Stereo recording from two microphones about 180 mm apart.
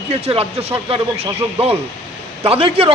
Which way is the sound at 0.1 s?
35° right (ahead or behind).